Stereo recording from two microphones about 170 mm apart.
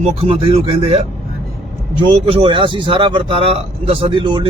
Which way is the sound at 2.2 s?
35° right (ahead or behind).